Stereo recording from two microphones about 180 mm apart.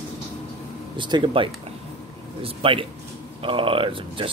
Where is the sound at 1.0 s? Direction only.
25° right (ahead or behind).